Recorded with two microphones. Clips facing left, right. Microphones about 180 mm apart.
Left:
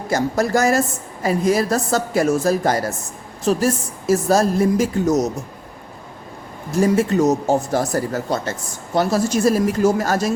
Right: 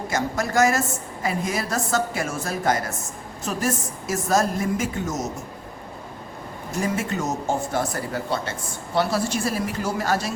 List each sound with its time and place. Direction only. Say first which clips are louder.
0.1 s a woman's voice: left 7 dB; 35° left (ahead or behind)
6.8 s a woman's voice: left 10 dB; 35° left (ahead or behind)